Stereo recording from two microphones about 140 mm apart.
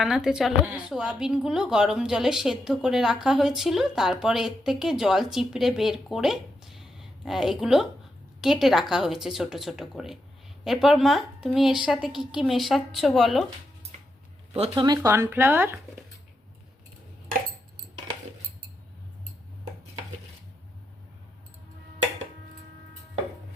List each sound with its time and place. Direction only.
0.0 s speech: 5° right (ahead or behind)
14.5 s speech: 45° right (ahead or behind)
14.8 s speech: 20° right (ahead or behind)